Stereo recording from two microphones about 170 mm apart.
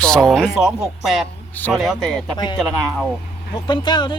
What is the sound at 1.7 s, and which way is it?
Speech, centre (ahead or behind).